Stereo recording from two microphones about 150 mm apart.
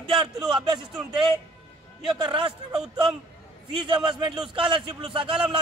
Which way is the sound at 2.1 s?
30° right (ahead or behind).